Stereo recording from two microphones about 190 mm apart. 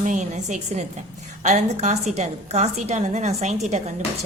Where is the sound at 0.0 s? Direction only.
40° right (ahead or behind).